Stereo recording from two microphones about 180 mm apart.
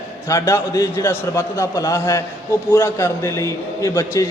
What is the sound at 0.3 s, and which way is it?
A man's voice, 15° left (ahead or behind).